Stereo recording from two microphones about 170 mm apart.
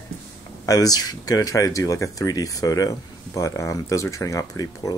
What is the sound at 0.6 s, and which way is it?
Speech, 20° left (ahead or behind).